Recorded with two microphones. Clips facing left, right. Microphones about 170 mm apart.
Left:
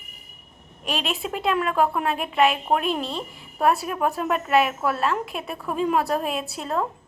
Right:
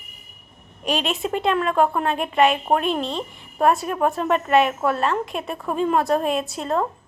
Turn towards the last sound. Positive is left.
turn(degrees=0)  # may be behind; listen again after turning